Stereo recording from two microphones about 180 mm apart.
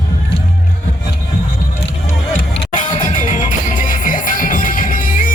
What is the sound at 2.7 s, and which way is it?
Music, 45° left (ahead or behind).